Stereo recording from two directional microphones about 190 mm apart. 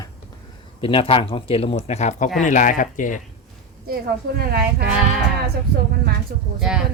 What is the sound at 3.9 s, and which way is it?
Speech, 55° right (ahead or behind).